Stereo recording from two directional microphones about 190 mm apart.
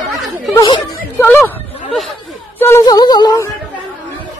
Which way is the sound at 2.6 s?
15° left (ahead or behind).